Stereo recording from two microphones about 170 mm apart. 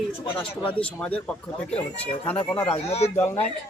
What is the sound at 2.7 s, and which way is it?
Speech, 40° left (ahead or behind).